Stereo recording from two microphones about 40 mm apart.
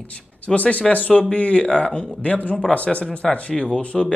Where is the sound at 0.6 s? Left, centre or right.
Left.